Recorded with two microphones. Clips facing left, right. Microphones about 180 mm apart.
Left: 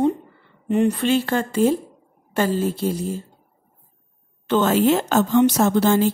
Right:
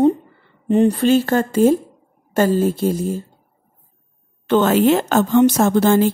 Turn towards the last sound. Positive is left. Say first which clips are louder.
# right 3 dB
turn(degrees=-50)  # may be behind; listen again after turning